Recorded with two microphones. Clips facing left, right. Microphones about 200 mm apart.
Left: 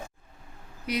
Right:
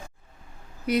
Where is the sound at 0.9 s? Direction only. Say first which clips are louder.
Right 6 dB; 50° right (ahead or behind).